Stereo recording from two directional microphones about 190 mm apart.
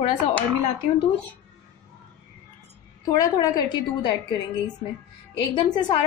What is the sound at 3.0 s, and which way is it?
A woman's voice, 20° left (ahead or behind).